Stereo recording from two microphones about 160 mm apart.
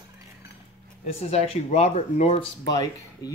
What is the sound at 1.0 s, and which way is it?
Speech, 40° left (ahead or behind).